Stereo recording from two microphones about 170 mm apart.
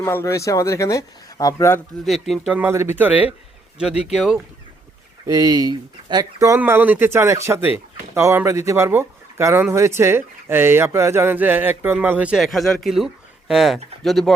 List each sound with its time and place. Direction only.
0.0 s speech: 15° left (ahead or behind)
2.0 s speech: centre (ahead or behind)
5.2 s speech: 20° right (ahead or behind); by 14.3 s centre (ahead or behind)